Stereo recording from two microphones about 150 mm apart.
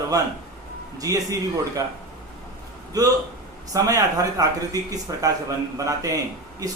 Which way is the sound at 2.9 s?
25° right (ahead or behind).